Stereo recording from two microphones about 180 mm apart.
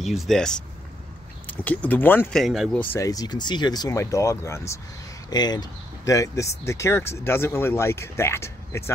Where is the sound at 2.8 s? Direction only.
15° left (ahead or behind).